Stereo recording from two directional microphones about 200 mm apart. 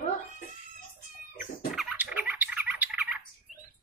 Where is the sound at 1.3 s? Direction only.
45° left (ahead or behind).